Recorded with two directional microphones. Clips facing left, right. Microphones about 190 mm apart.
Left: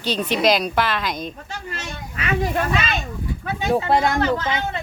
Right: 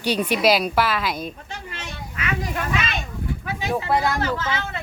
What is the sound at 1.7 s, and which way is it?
Children playing, 30° left (ahead or behind).